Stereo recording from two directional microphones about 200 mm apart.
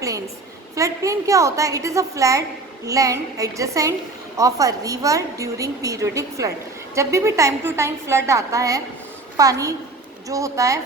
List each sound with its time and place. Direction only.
0.8 s a woman's voice: 15° right (ahead or behind)